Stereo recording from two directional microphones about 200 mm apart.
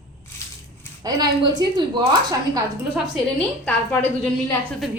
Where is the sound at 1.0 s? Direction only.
20° right (ahead or behind).